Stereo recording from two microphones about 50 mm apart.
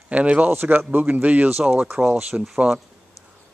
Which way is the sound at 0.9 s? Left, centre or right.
Right.